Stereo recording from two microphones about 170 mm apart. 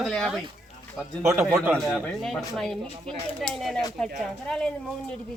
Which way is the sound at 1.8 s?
5° left (ahead or behind).